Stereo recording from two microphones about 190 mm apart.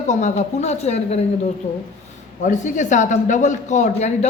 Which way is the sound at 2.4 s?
40° left (ahead or behind).